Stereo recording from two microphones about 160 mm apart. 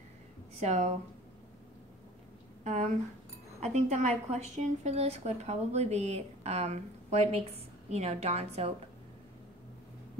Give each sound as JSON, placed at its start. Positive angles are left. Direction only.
{"t": 0.6, "sound": "a woman's voice", "side_deg": -45}
{"t": 3.6, "sound": "a woman's voice", "side_deg": -45}